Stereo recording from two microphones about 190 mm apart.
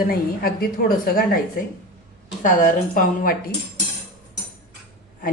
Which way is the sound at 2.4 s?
45° left (ahead or behind).